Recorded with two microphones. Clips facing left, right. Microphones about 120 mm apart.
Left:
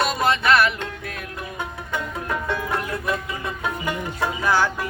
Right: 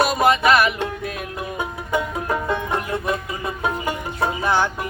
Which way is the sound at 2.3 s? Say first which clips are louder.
Right 2 dB; 25° right (ahead or behind).